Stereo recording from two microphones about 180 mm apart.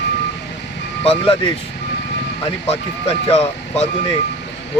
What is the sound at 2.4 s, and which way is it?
Speech, 35° left (ahead or behind).